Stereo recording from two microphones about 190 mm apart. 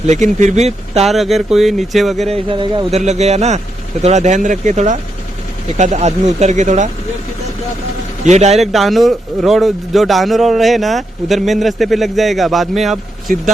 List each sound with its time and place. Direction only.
0.1 s speech: 40° right (ahead or behind)
1.0 s speech: centre (ahead or behind)
2.2 s a man's voice: 30° right (ahead or behind)
3.0 s speech: 35° right (ahead or behind)
8.2 s speech: 35° right (ahead or behind)
8.5 s speech: centre (ahead or behind)